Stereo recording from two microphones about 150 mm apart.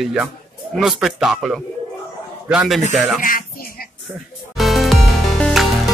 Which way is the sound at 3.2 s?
70° left (ahead or behind).